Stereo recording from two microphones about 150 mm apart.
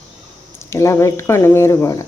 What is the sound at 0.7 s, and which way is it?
Speech, 20° left (ahead or behind).